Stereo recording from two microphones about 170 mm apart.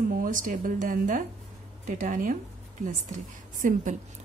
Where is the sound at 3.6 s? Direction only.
50° right (ahead or behind).